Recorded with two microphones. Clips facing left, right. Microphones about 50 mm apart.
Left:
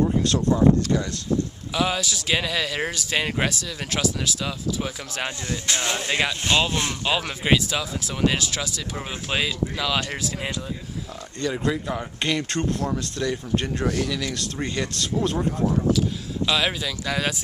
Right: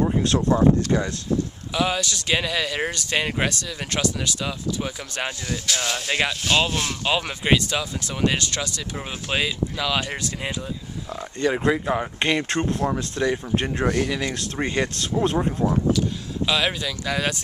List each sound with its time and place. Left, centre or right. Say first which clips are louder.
0.0 s speech: even; right
0.9 s speech: right 2 dB; right
1.7 s a man's voice: right 1 dB; centre
5.7 s speech: left 1 dB; left
6.0 s a man's voice: right 1 dB; centre
6.7 s speech: even; left
7.1 s a man's voice: right 1 dB; centre
11.1 s speech: right 5 dB; right
15.9 s speech: even; centre